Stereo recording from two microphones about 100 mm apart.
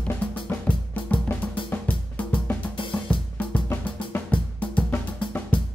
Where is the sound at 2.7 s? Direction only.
55° left (ahead or behind).